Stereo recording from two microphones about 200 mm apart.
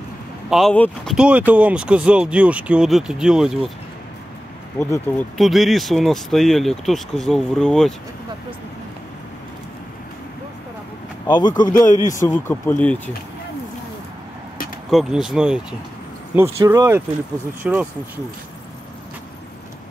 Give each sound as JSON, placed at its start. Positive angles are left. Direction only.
{"t": 0.5, "sound": "speech", "side_deg": 0}
{"t": 1.1, "sound": "speech", "side_deg": -5}
{"t": 4.7, "sound": "speech", "side_deg": 10}
{"t": 5.4, "sound": "speech", "side_deg": 0}
{"t": 11.2, "sound": "speech", "side_deg": 20}
{"t": 12.4, "sound": "speech", "side_deg": 10}
{"t": 14.9, "sound": "speech", "side_deg": 0}
{"t": 16.3, "sound": "speech", "side_deg": -15}